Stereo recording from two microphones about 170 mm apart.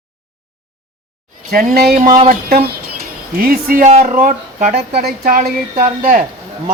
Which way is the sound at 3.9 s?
40° right (ahead or behind).